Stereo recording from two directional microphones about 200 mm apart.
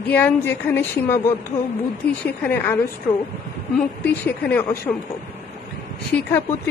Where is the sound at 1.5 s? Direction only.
30° left (ahead or behind).